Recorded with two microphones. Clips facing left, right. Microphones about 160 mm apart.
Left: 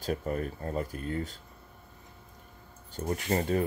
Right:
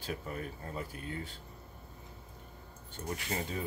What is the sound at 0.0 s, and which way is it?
Speech, 45° left (ahead or behind).